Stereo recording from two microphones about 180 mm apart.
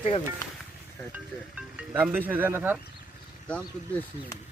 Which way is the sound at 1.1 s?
10° right (ahead or behind).